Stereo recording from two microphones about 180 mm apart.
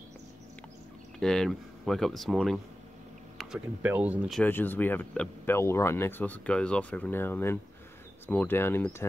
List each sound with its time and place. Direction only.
1.2 s speech: 5° left (ahead or behind)
4.4 s speech: 10° left (ahead or behind)